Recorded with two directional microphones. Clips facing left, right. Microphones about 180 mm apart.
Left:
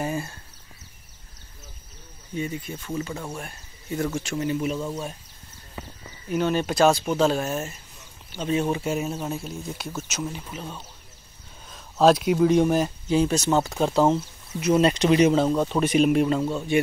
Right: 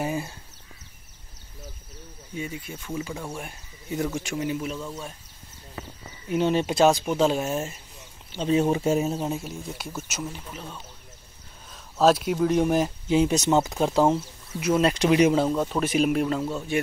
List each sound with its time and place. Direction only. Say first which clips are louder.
0.0 s speech: even; 10° right (ahead or behind)
2.3 s speech: left 4 dB; 5° right (ahead or behind)
4.7 s speech: left 5 dB; 15° left (ahead or behind)
6.2 s speech: right 1 dB; 25° right (ahead or behind)
8.3 s speech: right 2 dB; 30° right (ahead or behind)
9.5 s speech: left 2 dB; 10° right (ahead or behind)
10.3 s speech: left 3 dB; 5° left (ahead or behind)
12.7 s speech: even; 15° right (ahead or behind); by 16.8 s centre (ahead or behind)